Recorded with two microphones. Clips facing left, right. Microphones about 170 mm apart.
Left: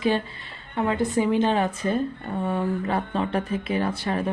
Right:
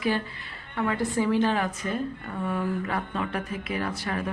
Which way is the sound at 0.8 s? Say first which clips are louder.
Left 3 dB; 25° left (ahead or behind).